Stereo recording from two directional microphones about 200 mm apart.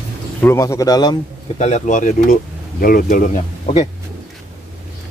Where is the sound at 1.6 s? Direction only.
35° left (ahead or behind).